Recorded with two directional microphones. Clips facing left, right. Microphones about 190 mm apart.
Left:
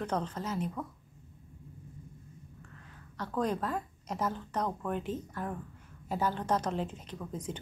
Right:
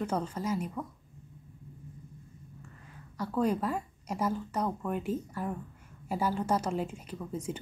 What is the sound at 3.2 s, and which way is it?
Speech, 10° right (ahead or behind).